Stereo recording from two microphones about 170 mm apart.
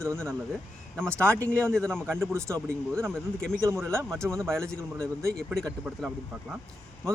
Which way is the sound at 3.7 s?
15° right (ahead or behind).